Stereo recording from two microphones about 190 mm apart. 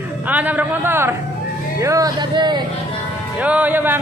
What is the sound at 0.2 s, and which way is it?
A man's voice, 10° right (ahead or behind).